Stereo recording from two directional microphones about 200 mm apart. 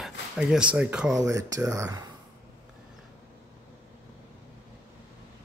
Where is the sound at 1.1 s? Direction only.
15° right (ahead or behind).